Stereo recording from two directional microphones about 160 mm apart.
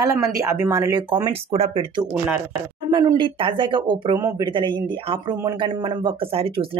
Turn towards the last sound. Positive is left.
turn(degrees=-35)  # may be behind; listen again after turning